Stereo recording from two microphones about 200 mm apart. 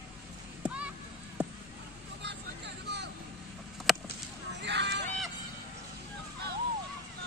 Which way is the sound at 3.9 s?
Centre (ahead or behind).